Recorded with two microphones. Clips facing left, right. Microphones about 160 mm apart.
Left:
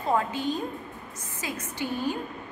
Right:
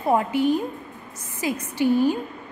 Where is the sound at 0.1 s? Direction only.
15° right (ahead or behind).